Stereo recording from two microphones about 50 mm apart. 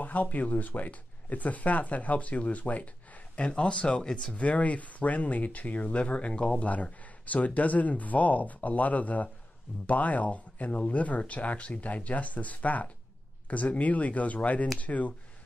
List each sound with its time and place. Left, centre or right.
0.0 s speech: left